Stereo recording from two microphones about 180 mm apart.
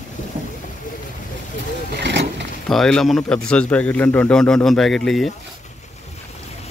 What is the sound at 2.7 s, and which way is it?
A man's voice, centre (ahead or behind).